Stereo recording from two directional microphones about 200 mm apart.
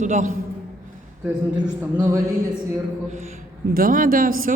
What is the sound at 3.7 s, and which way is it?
Speech, 45° right (ahead or behind).